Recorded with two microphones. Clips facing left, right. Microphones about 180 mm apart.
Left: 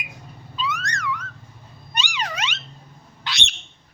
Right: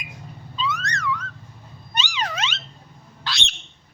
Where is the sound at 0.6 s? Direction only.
10° left (ahead or behind).